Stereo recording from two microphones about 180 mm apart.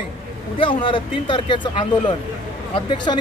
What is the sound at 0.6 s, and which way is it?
Speech, 30° left (ahead or behind).